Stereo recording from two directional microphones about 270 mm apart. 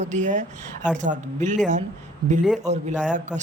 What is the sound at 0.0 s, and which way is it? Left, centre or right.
Speech, right.